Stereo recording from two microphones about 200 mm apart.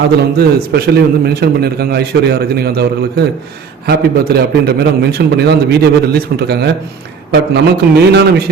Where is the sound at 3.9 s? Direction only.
55° right (ahead or behind).